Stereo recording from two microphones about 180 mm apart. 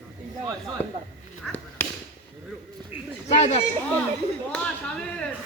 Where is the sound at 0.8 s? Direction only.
35° left (ahead or behind).